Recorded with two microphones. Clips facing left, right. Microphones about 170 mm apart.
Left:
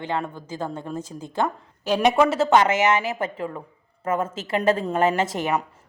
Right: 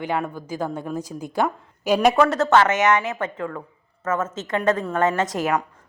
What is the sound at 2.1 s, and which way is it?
Speech, 10° left (ahead or behind).